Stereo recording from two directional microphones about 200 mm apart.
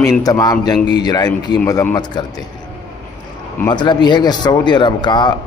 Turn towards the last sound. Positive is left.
turn(degrees=20)  # may be behind; listen again after turning